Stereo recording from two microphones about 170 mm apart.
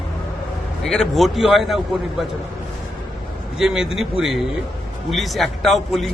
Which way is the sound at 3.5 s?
5° right (ahead or behind).